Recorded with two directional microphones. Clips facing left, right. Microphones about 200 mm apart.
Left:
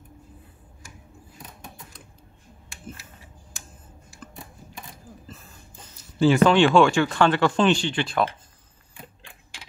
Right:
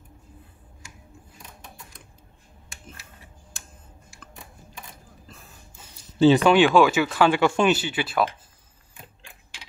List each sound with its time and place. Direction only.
5.3 s a sound: centre (ahead or behind)
6.1 s speech: 20° right (ahead or behind)
6.5 s speech: 5° right (ahead or behind)